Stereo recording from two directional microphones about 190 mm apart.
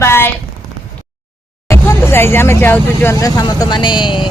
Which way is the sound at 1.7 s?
15° left (ahead or behind).